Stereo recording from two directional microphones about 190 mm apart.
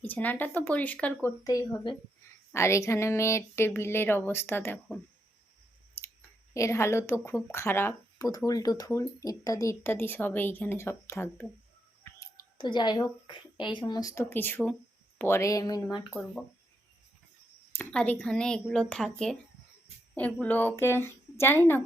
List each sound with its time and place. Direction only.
0.0 s speech: 10° left (ahead or behind)
1.5 s speech: 20° left (ahead or behind)
6.5 s speech: 15° left (ahead or behind)
12.2 s a sound: 25° left (ahead or behind)
13.7 s speech: 20° left (ahead or behind)
17.7 s a woman's voice: 10° left (ahead or behind)